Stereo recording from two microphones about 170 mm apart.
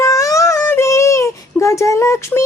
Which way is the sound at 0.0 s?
20° left (ahead or behind).